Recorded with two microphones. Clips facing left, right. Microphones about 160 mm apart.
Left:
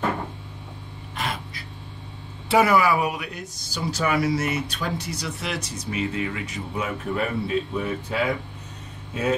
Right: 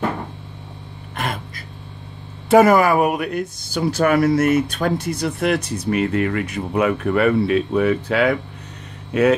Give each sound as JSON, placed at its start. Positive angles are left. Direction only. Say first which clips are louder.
{"t": 1.1, "sound": "gasp", "louder": "right 4 dB", "side_deg": -50}
{"t": 2.4, "sound": "speech", "louder": "right 6 dB", "side_deg": -45}